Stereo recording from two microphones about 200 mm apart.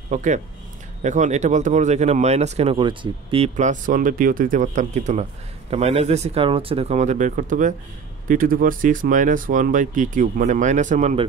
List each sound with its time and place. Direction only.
0.1 s speech: 35° right (ahead or behind)